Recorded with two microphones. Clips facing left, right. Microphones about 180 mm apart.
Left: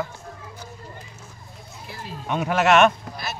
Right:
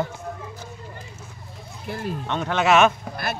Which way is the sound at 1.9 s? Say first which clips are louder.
Right 8 dB; 55° right (ahead or behind).